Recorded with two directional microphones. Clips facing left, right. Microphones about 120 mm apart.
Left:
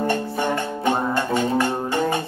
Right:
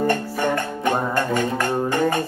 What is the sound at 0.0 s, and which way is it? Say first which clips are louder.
Music: right 1 dB; 15° left (ahead or behind).